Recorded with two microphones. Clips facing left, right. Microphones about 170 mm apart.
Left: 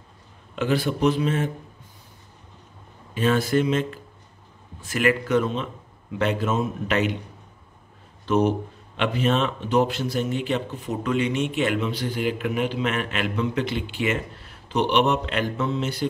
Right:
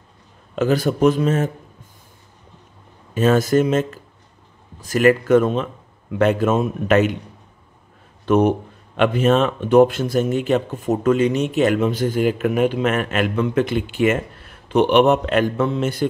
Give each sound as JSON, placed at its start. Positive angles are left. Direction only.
{"t": 0.6, "sound": "a man's voice", "side_deg": -40}
{"t": 3.2, "sound": "a man's voice", "side_deg": -45}
{"t": 8.3, "sound": "a man's voice", "side_deg": -55}